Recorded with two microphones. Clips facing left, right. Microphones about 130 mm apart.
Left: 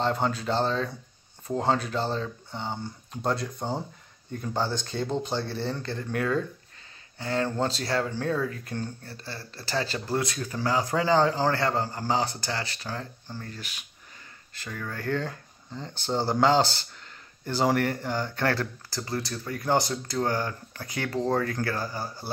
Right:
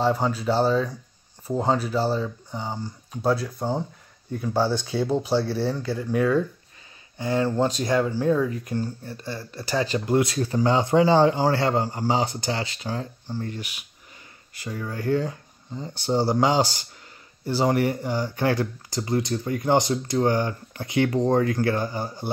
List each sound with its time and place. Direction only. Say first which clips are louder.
0.0 s speech: right 4 dB; 5° right (ahead or behind)